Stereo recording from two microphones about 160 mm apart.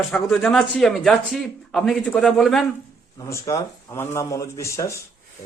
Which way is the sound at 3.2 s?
20° left (ahead or behind).